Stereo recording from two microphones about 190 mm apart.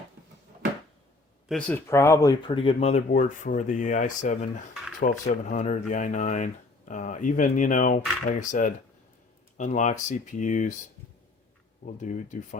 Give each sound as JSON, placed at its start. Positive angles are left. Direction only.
{"t": 1.5, "sound": "speech", "side_deg": 5}
{"t": 11.9, "sound": "speech", "side_deg": 40}